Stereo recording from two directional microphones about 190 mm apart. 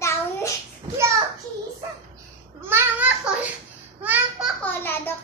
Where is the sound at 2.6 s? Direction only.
10° right (ahead or behind).